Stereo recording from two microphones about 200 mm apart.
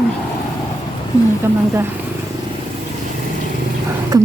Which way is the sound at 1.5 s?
10° right (ahead or behind).